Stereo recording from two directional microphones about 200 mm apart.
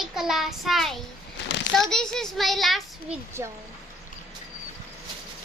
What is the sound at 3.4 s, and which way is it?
Speech, 10° right (ahead or behind).